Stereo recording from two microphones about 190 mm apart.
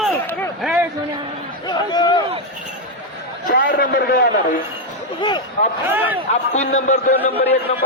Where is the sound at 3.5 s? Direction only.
65° left (ahead or behind).